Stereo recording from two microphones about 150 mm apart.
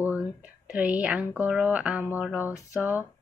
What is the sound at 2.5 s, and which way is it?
Speech, 20° left (ahead or behind).